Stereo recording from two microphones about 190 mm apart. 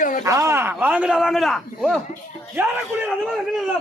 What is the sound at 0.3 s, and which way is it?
A man's voice, 15° right (ahead or behind).